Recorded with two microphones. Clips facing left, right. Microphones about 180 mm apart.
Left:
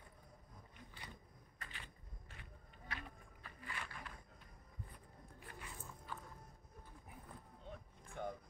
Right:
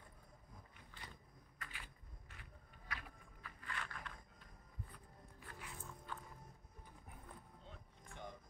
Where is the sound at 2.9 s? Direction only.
25° left (ahead or behind).